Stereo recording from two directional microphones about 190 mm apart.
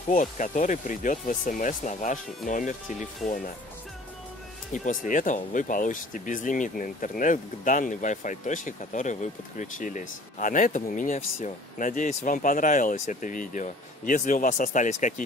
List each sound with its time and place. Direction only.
0.1 s speech: 40° left (ahead or behind)
4.7 s speech: 40° left (ahead or behind)